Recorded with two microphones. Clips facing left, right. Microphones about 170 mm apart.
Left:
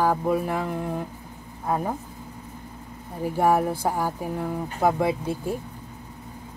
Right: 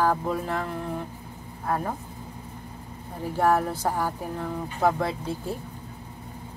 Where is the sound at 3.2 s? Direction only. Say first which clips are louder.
Left 2 dB; 15° left (ahead or behind).